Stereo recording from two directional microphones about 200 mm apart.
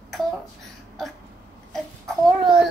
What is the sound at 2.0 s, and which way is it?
Speech, 25° right (ahead or behind).